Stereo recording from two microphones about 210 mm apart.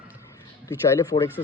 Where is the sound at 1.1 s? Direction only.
40° left (ahead or behind).